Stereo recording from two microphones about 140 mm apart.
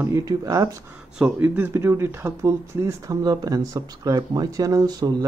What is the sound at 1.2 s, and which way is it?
Speech, 10° right (ahead or behind).